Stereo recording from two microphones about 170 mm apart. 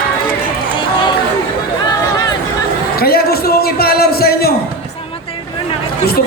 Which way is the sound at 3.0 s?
65° left (ahead or behind).